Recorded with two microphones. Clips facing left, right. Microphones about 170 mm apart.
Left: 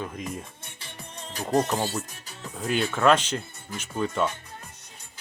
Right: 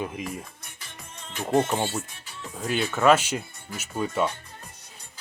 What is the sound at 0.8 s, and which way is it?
Music, 35° left (ahead or behind).